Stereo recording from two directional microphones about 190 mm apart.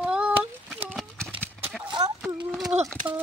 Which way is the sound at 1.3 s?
10° right (ahead or behind).